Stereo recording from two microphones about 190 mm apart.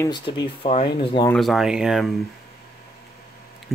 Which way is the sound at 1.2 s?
Centre (ahead or behind).